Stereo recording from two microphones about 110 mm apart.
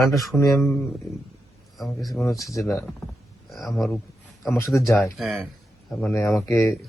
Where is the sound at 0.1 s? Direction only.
Centre (ahead or behind).